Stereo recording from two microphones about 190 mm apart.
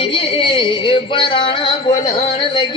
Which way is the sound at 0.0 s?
25° left (ahead or behind).